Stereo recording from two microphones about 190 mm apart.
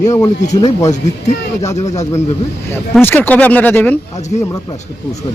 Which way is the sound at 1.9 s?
35° left (ahead or behind).